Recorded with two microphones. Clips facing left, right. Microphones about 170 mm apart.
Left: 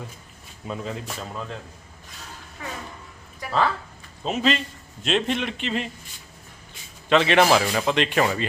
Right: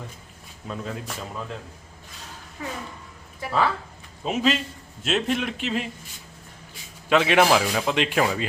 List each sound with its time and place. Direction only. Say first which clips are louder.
0.7 s speech: left 1 dB; centre (ahead or behind)
3.4 s speech: right 1 dB; 25° right (ahead or behind)
4.2 s a man's voice: even; 5° right (ahead or behind)
7.1 s speech: left 1 dB; 5° right (ahead or behind)